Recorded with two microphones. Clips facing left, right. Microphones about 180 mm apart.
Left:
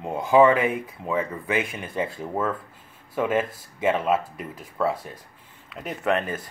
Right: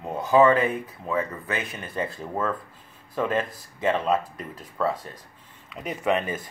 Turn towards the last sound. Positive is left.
turn(degrees=0)  # may be behind; listen again after turning